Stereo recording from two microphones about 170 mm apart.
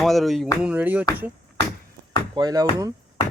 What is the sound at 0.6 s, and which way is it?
Music, 10° right (ahead or behind).